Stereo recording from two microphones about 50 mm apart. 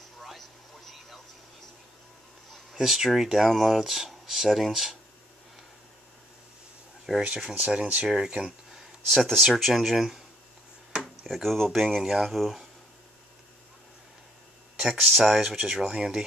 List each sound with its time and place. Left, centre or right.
0.2 s a sound: centre
2.7 s speech: centre
7.1 s speech: centre
7.5 s speech: right
9.1 s speech: centre
9.4 s speech: centre
11.0 s drawer open or close: centre
12.0 s speech: centre
14.8 s speech: centre